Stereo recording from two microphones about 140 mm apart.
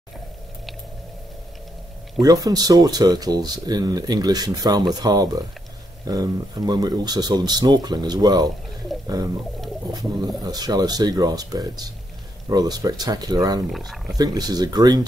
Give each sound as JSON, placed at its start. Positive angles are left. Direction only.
{"t": 2.2, "sound": "speech", "side_deg": -25}
{"t": 9.9, "sound": "speech", "side_deg": -30}
{"t": 13.7, "sound": "speech", "side_deg": 0}
{"t": 14.1, "sound": "speech", "side_deg": -30}